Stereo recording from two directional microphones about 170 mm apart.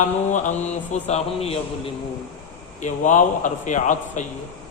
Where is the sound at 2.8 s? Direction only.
45° left (ahead or behind).